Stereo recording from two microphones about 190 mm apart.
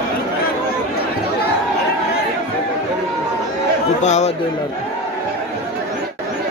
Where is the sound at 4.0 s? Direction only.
35° left (ahead or behind).